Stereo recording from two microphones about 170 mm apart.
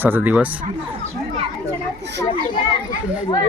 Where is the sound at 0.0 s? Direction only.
10° right (ahead or behind).